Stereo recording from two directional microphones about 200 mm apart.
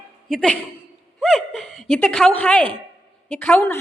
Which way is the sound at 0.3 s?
5° left (ahead or behind).